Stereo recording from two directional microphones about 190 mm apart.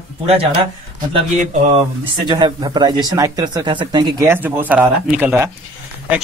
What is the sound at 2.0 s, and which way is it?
Speech, 25° right (ahead or behind).